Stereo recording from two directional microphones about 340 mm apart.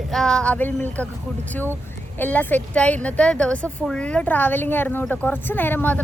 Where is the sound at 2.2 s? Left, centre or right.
Centre.